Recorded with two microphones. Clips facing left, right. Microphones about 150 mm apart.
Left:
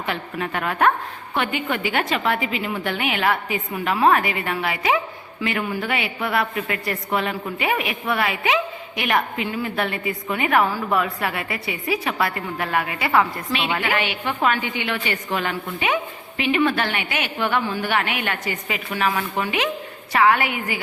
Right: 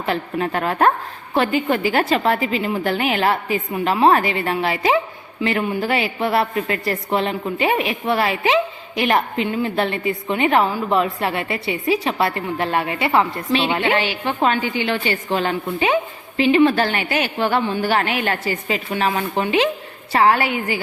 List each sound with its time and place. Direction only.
0.0 s a woman's voice: 35° right (ahead or behind)